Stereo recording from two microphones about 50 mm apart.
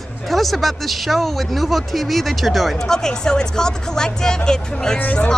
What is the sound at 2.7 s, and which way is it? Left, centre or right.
Speech, centre.